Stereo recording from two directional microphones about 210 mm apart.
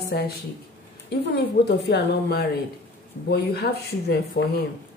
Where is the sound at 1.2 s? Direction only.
55° left (ahead or behind).